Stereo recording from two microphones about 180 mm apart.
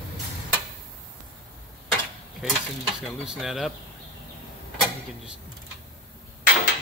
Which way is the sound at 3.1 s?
Centre (ahead or behind).